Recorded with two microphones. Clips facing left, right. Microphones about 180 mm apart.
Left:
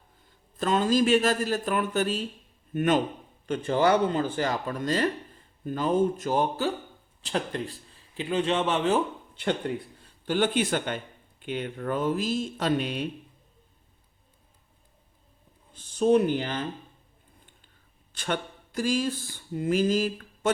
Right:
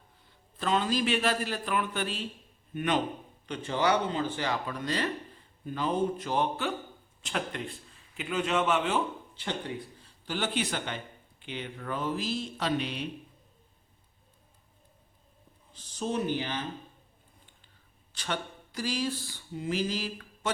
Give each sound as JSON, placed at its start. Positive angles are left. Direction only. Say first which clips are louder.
{"t": 0.5, "sound": "a man's voice", "louder": "left 5 dB", "side_deg": 45}
{"t": 9.3, "sound": "speech", "louder": "left 7 dB", "side_deg": 55}
{"t": 15.7, "sound": "speech", "louder": "left 11 dB", "side_deg": 55}
{"t": 18.2, "sound": "a sound", "louder": "left 4 dB", "side_deg": 50}